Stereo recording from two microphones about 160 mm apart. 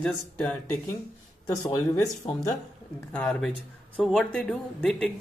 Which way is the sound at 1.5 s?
20° left (ahead or behind).